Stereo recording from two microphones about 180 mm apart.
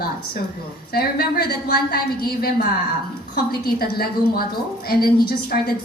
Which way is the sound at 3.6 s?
55° left (ahead or behind).